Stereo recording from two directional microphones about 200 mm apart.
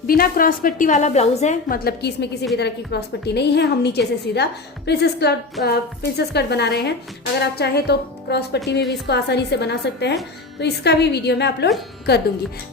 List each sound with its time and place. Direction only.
0.1 s a woman's voice: 45° left (ahead or behind)